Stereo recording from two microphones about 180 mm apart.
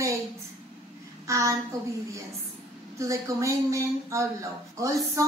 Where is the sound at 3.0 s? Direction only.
15° right (ahead or behind).